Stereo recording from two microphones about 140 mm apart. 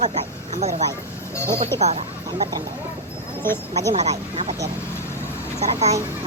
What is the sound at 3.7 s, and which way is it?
Speech, 50° right (ahead or behind).